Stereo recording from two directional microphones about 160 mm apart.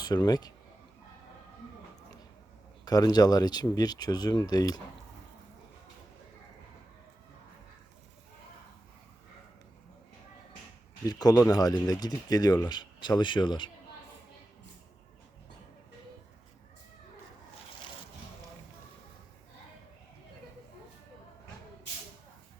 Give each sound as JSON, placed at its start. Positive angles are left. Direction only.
{"t": 0.0, "sound": "speech", "side_deg": 25}
{"t": 2.8, "sound": "speech", "side_deg": 25}
{"t": 11.0, "sound": "speech", "side_deg": 25}